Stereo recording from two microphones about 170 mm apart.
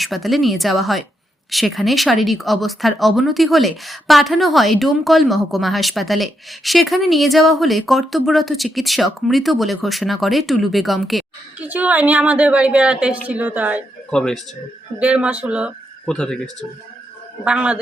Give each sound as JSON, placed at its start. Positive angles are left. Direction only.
{"t": 0.0, "sound": "speech", "side_deg": 0}
{"t": 14.1, "sound": "speech", "side_deg": 5}
{"t": 14.9, "sound": "speech", "side_deg": -5}
{"t": 16.0, "sound": "speech", "side_deg": 5}
{"t": 17.4, "sound": "speech", "side_deg": -5}